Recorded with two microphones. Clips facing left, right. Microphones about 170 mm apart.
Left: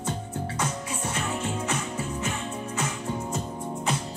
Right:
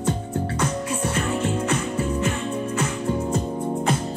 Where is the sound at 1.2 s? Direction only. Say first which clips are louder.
Right 6 dB; 60° right (ahead or behind).